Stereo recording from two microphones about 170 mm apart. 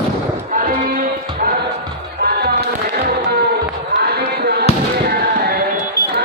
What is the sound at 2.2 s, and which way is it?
Music, 70° right (ahead or behind).